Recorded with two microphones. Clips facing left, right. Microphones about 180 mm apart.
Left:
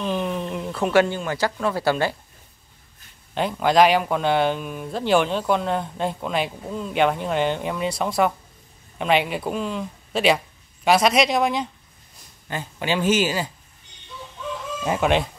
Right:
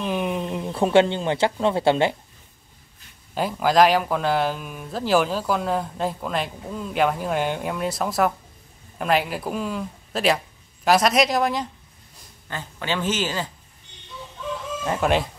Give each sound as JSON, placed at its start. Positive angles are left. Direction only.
{"t": 0.0, "sound": "speech", "side_deg": -10}
{"t": 3.3, "sound": "speech", "side_deg": -5}
{"t": 12.4, "sound": "speech", "side_deg": 15}
{"t": 14.9, "sound": "speech", "side_deg": 0}